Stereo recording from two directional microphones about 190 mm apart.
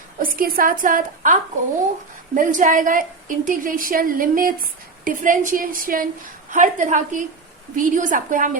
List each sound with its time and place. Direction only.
0.2 s a woman's voice: 50° right (ahead or behind)